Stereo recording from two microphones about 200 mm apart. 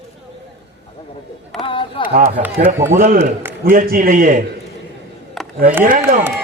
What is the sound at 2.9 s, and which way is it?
A man's voice, 35° right (ahead or behind).